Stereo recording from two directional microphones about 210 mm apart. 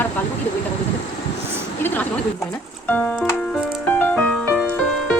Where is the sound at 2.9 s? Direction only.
5° left (ahead or behind).